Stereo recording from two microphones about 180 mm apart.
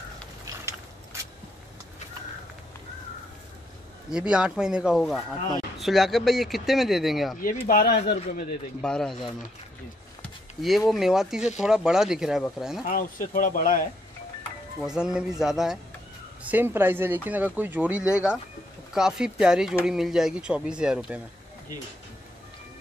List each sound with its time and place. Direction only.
4.1 s speech: 5° right (ahead or behind)
7.6 s speech: 55° left (ahead or behind)
8.8 s speech: 5° left (ahead or behind)
10.9 s speech: centre (ahead or behind)
12.8 s speech: 50° left (ahead or behind)
14.8 s speech: 5° right (ahead or behind)